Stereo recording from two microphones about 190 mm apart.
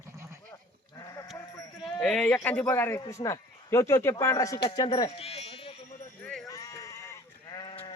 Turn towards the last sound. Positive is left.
turn(degrees=25)  # may be behind; listen again after turning